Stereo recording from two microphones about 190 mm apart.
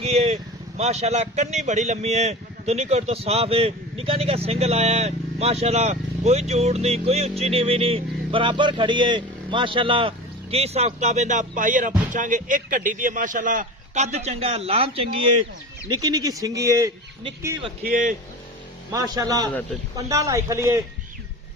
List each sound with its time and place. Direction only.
0.0 s vehicle: 35° right (ahead or behind)
0.8 s a man's voice: 35° right (ahead or behind); by 17.5 s 15° right (ahead or behind)
17.8 s speech: 45° right (ahead or behind)
18.9 s a man's voice: 20° right (ahead or behind)